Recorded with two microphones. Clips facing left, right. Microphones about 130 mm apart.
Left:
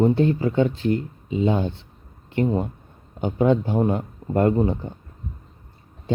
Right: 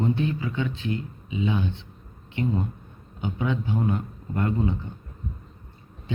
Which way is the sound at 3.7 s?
25° left (ahead or behind).